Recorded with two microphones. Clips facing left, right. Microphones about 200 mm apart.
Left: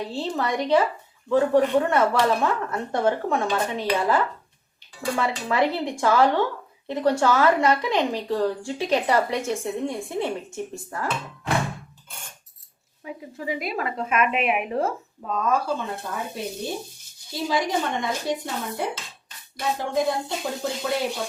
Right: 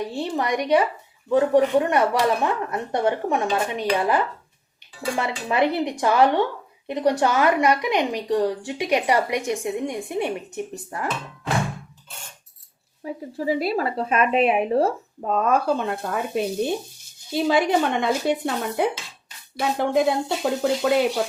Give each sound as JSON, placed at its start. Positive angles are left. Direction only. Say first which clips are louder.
{"t": 0.1, "sound": "a woman's voice", "louder": "right 2 dB", "side_deg": -15}
{"t": 13.0, "sound": "speech", "louder": "right 6 dB", "side_deg": -35}
{"t": 15.3, "sound": "speech", "louder": "right 4 dB", "side_deg": -60}